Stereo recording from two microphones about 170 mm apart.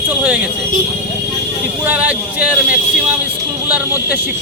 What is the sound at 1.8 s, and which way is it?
Speech, 10° right (ahead or behind).